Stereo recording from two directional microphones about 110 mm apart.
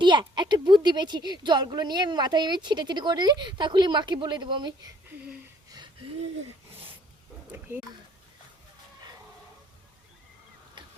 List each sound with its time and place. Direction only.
0.0 s a woman's voice: 45° right (ahead or behind)